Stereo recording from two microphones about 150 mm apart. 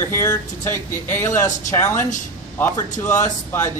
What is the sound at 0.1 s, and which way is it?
Speech, 15° left (ahead or behind).